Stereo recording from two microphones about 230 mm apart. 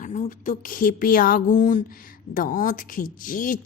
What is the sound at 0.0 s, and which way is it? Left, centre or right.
Speech, left.